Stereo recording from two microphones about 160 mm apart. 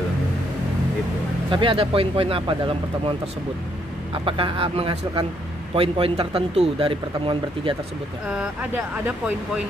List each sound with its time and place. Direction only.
1.5 s speech: 35° right (ahead or behind)
4.2 s speech: 35° right (ahead or behind)
8.3 s speech: 5° right (ahead or behind)